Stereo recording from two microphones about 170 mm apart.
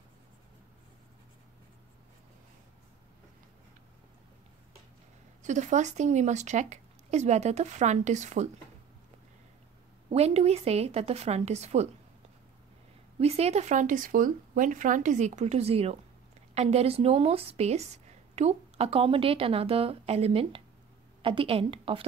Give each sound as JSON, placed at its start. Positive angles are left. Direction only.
{"t": 5.4, "sound": "speech", "side_deg": -45}
{"t": 10.1, "sound": "a woman's voice", "side_deg": -40}
{"t": 13.2, "sound": "a woman's voice", "side_deg": -40}